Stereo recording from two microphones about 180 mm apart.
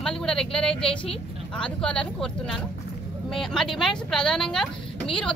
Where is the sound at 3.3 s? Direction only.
Centre (ahead or behind).